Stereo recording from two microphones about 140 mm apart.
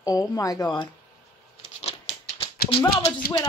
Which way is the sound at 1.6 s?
45° left (ahead or behind).